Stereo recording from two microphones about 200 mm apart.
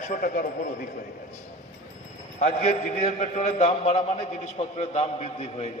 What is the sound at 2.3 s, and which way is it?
A man's voice, 35° left (ahead or behind).